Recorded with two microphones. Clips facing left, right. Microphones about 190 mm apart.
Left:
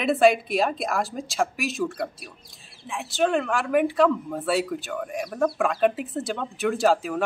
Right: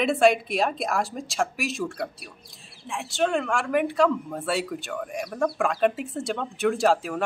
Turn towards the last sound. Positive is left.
turn(degrees=0)  # may be behind; listen again after turning